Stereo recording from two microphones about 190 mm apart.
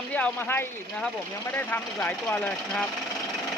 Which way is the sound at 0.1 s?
10° left (ahead or behind).